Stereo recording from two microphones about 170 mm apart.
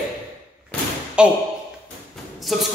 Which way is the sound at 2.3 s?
Centre (ahead or behind).